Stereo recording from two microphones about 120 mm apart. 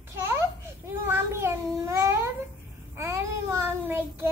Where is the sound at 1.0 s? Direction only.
20° right (ahead or behind).